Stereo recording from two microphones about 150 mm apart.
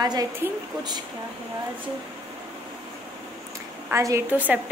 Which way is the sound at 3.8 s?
20° right (ahead or behind).